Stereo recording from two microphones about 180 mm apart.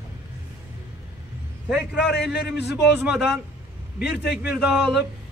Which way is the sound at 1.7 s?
5° right (ahead or behind).